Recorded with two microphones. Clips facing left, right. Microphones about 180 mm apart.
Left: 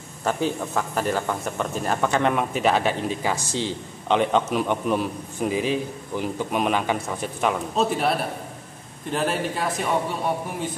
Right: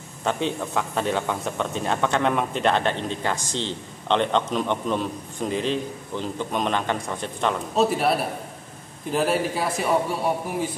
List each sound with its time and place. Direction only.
0.2 s speech: 5° left (ahead or behind)
7.7 s a man's voice: 5° right (ahead or behind)